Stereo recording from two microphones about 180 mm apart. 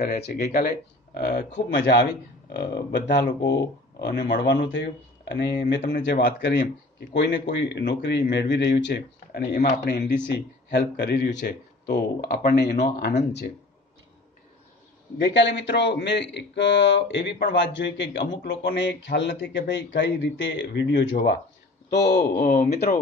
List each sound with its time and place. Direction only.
0.3 s speech: 45° left (ahead or behind); by 3.2 s 70° left (ahead or behind)
4.3 s speech: 75° left (ahead or behind); by 13.2 s 40° left (ahead or behind)
15.1 s speech: 85° left
21.9 s speech: 65° left (ahead or behind)